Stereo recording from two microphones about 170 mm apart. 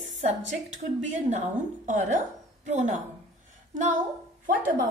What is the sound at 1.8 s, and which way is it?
A woman's voice, 45° right (ahead or behind).